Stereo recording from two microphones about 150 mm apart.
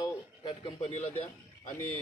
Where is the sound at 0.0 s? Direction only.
30° left (ahead or behind).